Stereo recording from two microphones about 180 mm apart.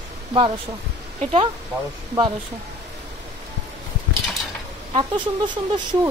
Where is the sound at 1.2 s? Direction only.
35° right (ahead or behind).